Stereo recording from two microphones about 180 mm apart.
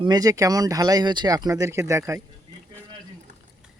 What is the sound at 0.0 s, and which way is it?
Speech, 20° right (ahead or behind).